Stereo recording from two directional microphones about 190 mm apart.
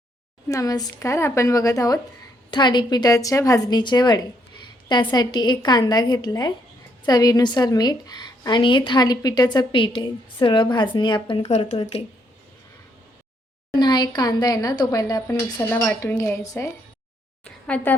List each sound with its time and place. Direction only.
0.4 s a woman's voice: 20° left (ahead or behind); by 11.8 s 35° left (ahead or behind)
13.7 s a woman's voice: 20° left (ahead or behind)
17.4 s a sound: 5° left (ahead or behind)